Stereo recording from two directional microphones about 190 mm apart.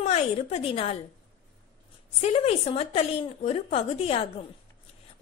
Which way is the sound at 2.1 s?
35° left (ahead or behind).